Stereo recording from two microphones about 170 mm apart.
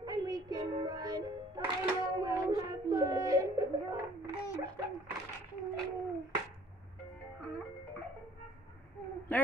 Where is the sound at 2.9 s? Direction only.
20° right (ahead or behind).